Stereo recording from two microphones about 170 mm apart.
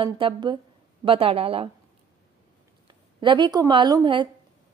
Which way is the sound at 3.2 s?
30° right (ahead or behind).